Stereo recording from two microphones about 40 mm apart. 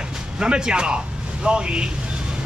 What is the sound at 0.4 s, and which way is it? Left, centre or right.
Speech, right.